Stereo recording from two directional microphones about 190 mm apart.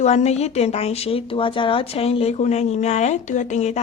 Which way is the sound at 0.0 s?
35° left (ahead or behind).